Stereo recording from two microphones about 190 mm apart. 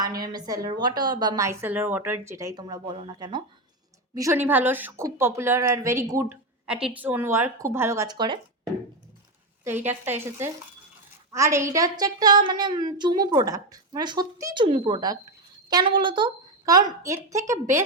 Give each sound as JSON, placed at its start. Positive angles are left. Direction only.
{"t": 0.3, "sound": "a woman's voice", "side_deg": -20}
{"t": 6.7, "sound": "speech", "side_deg": -5}
{"t": 9.6, "sound": "a woman's voice", "side_deg": -10}